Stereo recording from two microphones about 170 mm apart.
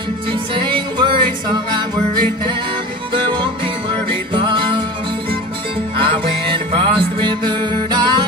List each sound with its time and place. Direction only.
0.3 s music: 30° right (ahead or behind)
5.9 s music: 30° right (ahead or behind)